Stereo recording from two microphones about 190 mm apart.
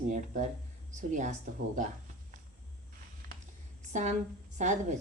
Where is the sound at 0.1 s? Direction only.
40° right (ahead or behind).